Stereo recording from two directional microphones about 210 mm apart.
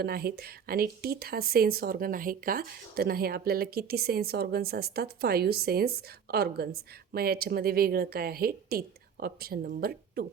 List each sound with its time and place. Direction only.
0.0 s speech: 50° right (ahead or behind)